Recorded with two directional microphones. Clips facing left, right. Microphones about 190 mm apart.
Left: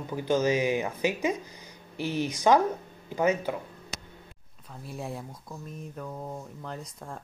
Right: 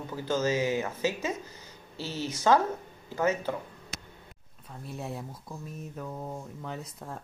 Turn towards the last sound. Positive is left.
turn(degrees=-5)  # may be behind; listen again after turning